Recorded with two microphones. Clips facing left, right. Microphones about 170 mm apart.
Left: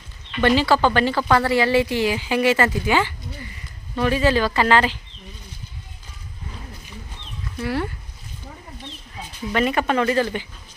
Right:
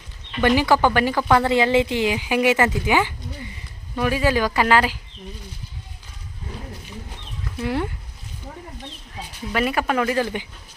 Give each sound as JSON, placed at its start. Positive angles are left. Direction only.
{"t": 0.4, "sound": "speech", "side_deg": -15}
{"t": 7.6, "sound": "speech", "side_deg": -15}
{"t": 9.5, "sound": "speech", "side_deg": -5}